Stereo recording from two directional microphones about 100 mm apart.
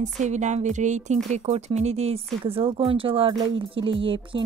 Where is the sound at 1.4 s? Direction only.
90° right.